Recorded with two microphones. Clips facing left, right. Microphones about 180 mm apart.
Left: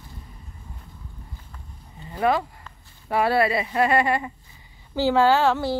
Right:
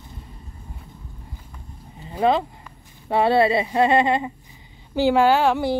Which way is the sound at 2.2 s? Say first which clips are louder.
Right 3 dB; 25° right (ahead or behind).